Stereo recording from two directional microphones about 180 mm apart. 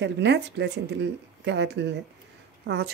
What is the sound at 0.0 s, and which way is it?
Speech, 75° right (ahead or behind).